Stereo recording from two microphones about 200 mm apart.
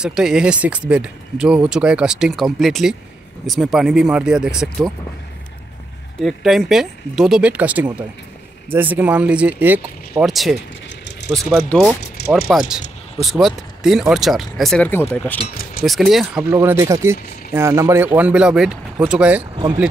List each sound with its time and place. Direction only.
0.0 s speech: 5° right (ahead or behind)
6.2 s speech: centre (ahead or behind)
16.4 s speech: 15° right (ahead or behind)
19.5 s speech: 20° right (ahead or behind)